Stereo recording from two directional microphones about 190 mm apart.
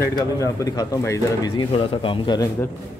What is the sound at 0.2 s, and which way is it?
Speech, 15° left (ahead or behind).